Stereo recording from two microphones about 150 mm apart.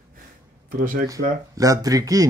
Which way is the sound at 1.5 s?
25° right (ahead or behind).